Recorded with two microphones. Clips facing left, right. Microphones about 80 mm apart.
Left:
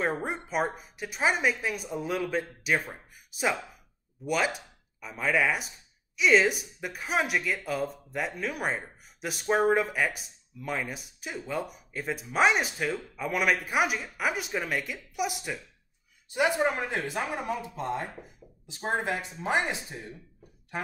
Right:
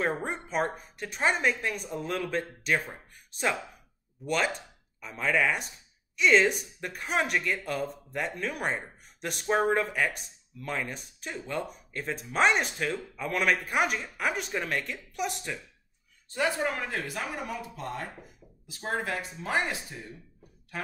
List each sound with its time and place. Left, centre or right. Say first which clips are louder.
0.0 s speech: even; centre; by 20.9 s left